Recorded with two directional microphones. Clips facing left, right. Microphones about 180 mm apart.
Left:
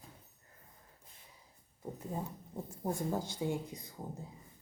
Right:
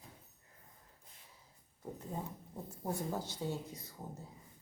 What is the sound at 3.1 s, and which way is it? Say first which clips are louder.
Speech: left 4 dB; 10° left (ahead or behind).